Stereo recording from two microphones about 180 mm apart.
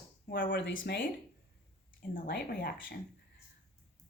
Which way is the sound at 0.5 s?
90° left.